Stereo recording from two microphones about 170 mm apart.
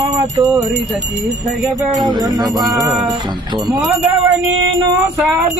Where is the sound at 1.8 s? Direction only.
25° right (ahead or behind).